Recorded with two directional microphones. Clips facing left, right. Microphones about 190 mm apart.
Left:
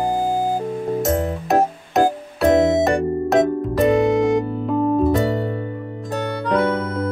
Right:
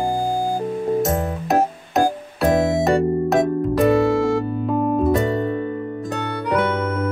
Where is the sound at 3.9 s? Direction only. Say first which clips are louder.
Left 1 dB; 20° left (ahead or behind).